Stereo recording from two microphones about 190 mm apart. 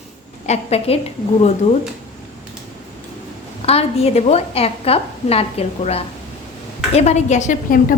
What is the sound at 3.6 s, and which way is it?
A woman's voice, 30° left (ahead or behind).